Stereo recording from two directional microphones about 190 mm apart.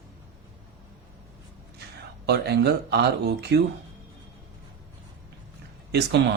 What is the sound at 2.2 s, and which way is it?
Speech, 60° right (ahead or behind).